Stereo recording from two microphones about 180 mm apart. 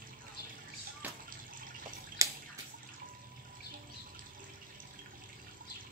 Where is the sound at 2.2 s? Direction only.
20° right (ahead or behind).